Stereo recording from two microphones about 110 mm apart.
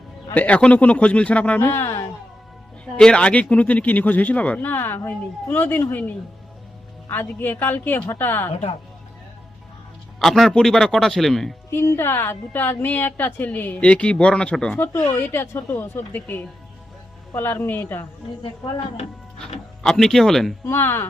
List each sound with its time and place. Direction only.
0.3 s a man's voice: 15° left (ahead or behind)
2.8 s a man's voice: 10° left (ahead or behind)
10.2 s a man's voice: centre (ahead or behind)
11.7 s a man's voice: 20° left (ahead or behind)
14.8 s speech: 20° left (ahead or behind)
19.8 s a man's voice: 5° left (ahead or behind)
20.7 s speech: 20° left (ahead or behind)